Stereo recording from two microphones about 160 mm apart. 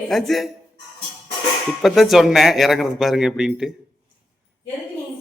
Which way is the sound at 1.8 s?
Centre (ahead or behind).